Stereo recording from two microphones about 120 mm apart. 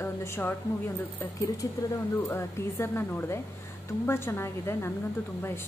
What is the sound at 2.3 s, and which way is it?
Speech, 20° left (ahead or behind).